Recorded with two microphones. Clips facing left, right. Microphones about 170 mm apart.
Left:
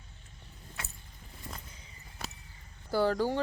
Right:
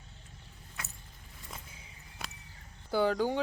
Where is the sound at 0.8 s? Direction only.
30° left (ahead or behind).